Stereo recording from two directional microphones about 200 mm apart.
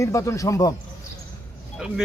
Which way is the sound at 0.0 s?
15° left (ahead or behind).